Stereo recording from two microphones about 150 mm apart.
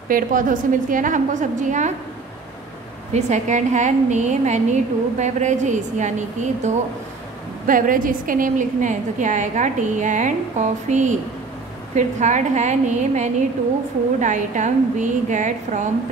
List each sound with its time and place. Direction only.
0.1 s a woman's voice: 65° right (ahead or behind)
3.1 s a woman's voice: 50° right (ahead or behind)
7.6 s a woman's voice: 65° right (ahead or behind)